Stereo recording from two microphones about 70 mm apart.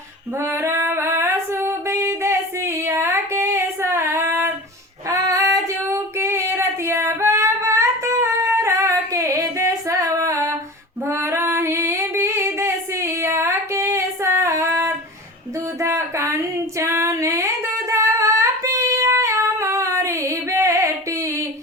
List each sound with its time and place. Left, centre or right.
0.3 s female singing: right
5.0 s female singing: right
5.9 s female singing: right